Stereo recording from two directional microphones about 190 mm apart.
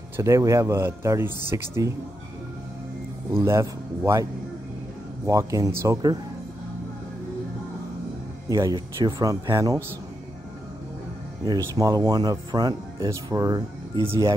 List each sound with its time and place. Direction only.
0.2 s speech: 15° right (ahead or behind)
3.4 s speech: 15° right (ahead or behind)
8.5 s speech: 20° right (ahead or behind)
11.4 s speech: 20° right (ahead or behind)